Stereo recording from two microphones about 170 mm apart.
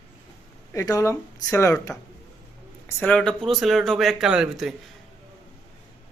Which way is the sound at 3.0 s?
5° left (ahead or behind).